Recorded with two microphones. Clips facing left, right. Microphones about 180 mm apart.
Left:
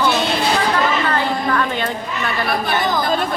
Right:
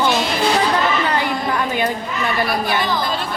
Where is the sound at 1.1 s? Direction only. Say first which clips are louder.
Left 1 dB; 15° right (ahead or behind).